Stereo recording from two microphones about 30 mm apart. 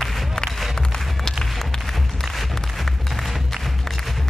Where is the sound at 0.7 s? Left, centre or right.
Centre.